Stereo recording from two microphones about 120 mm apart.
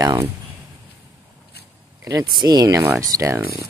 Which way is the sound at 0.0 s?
25° right (ahead or behind).